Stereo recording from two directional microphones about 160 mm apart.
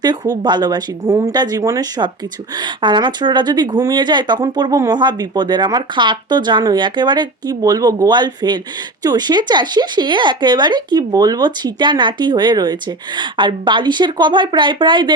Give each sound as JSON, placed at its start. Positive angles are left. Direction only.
{"t": 0.0, "sound": "speech", "side_deg": -25}